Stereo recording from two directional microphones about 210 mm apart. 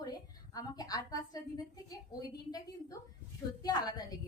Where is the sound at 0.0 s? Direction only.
20° left (ahead or behind).